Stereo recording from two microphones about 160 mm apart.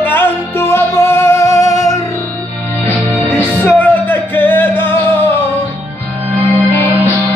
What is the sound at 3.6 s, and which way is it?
Music, 10° left (ahead or behind).